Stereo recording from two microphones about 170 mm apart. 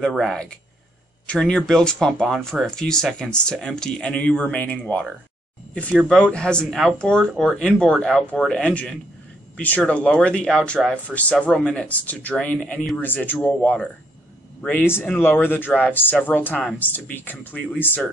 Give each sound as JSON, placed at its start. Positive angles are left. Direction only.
{"t": 0.1, "sound": "speech", "side_deg": 5}
{"t": 6.0, "sound": "speech", "side_deg": 5}